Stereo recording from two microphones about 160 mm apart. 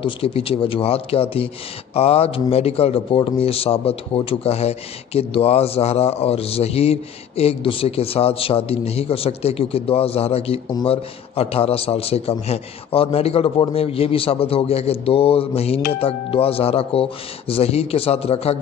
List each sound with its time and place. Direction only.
0.0 s a man's voice: 35° left (ahead or behind)